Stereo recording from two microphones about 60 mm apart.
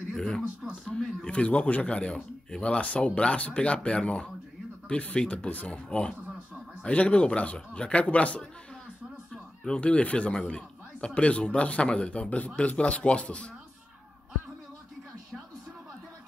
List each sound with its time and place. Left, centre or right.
0.8 s a man's voice: centre
9.7 s a man's voice: left